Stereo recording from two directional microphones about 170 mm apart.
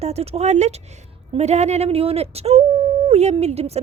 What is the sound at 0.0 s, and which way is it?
A woman's voice, 40° right (ahead or behind).